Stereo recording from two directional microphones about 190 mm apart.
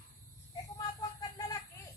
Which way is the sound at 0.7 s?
20° left (ahead or behind).